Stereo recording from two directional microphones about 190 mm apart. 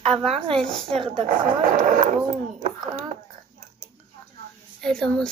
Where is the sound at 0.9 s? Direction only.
30° right (ahead or behind).